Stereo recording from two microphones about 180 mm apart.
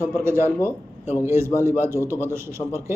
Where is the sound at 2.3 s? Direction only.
15° right (ahead or behind).